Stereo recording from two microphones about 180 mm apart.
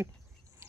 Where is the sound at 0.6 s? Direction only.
15° right (ahead or behind).